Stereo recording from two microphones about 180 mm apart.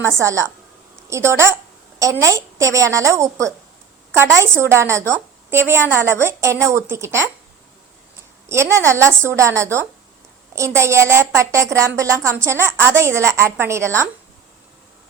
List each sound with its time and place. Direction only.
0.2 s a woman's voice: 15° right (ahead or behind)
8.4 s a woman's voice: 15° right (ahead or behind)